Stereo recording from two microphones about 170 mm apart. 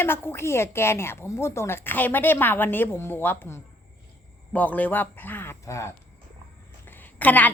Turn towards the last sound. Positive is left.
turn(degrees=10)  # may be behind; listen again after turning